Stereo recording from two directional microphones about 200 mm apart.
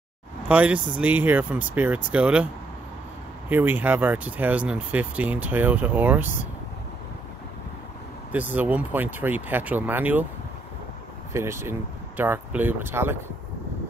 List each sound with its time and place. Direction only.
0.5 s speech: 5° right (ahead or behind)
3.4 s speech: 10° right (ahead or behind)
8.3 s speech: 10° right (ahead or behind)
11.3 s speech: 15° right (ahead or behind)